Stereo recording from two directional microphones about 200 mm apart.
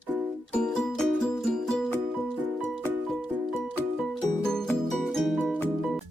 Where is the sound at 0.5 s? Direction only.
5° left (ahead or behind).